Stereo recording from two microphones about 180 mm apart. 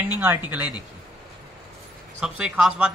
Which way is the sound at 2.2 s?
5° right (ahead or behind).